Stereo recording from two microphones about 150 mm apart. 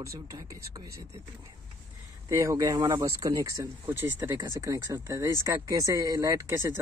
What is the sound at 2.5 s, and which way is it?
Speech, 20° right (ahead or behind).